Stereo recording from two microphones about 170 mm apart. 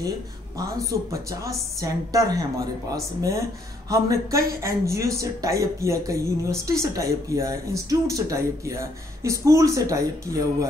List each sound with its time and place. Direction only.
1.1 s speech: 20° right (ahead or behind)